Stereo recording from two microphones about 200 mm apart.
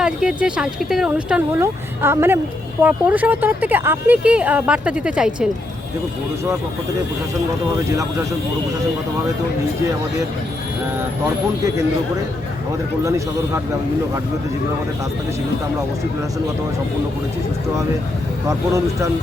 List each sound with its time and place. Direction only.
0.0 s speech: 5° right (ahead or behind)
13.1 s speech: 15° right (ahead or behind)
18.4 s speech: 15° right (ahead or behind)